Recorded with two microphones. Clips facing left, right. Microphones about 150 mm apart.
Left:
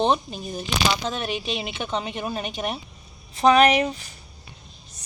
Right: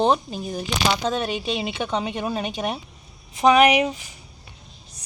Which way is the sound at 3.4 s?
15° right (ahead or behind).